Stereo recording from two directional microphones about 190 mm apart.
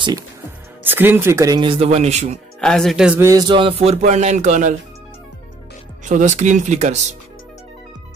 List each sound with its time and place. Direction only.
0.8 s speech: 10° right (ahead or behind); by 2.4 s 35° right (ahead or behind)
2.6 s speech: 5° left (ahead or behind)
3.3 s speech: 25° right (ahead or behind); by 4.7 s 40° right (ahead or behind)
6.0 s speech: 40° right (ahead or behind)